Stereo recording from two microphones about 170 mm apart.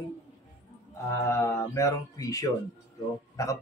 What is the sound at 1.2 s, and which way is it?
Speech, 15° left (ahead or behind).